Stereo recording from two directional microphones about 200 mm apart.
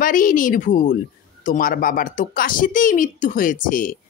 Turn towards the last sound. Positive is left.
turn(degrees=45)  # may be behind; listen again after turning